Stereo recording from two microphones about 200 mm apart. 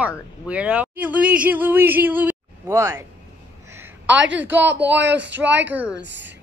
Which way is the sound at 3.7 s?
10° right (ahead or behind).